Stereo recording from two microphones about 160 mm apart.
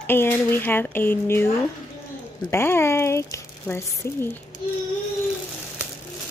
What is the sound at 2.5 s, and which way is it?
Speech, 15° left (ahead or behind).